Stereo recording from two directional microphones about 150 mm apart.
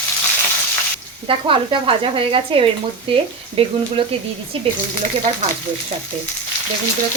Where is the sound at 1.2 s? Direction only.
35° right (ahead or behind).